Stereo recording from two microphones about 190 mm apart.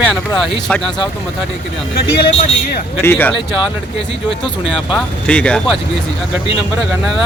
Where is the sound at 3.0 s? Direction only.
10° left (ahead or behind).